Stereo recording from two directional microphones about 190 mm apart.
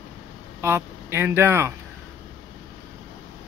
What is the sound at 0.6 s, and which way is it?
Speech, 10° right (ahead or behind).